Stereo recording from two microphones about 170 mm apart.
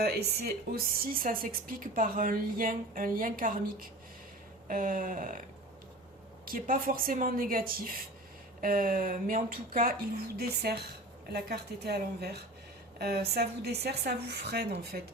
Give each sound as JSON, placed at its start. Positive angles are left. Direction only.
{"t": 0.0, "sound": "a woman's voice", "side_deg": -70}
{"t": 4.7, "sound": "a sound", "side_deg": -55}
{"t": 6.4, "sound": "a woman's voice", "side_deg": -55}